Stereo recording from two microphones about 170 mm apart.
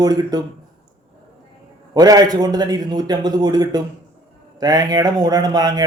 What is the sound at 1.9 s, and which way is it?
Speech, 20° right (ahead or behind).